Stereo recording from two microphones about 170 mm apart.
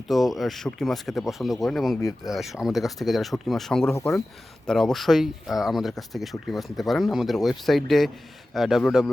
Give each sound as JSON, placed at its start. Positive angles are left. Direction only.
{"t": 0.1, "sound": "speech", "side_deg": 0}
{"t": 3.9, "sound": "speech", "side_deg": 15}
{"t": 4.6, "sound": "speech", "side_deg": 5}